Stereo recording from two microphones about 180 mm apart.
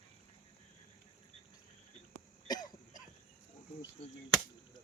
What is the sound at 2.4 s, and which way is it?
Cough, 20° left (ahead or behind).